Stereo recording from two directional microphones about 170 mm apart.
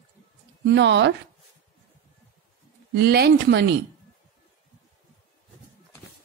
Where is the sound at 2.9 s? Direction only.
70° right (ahead or behind).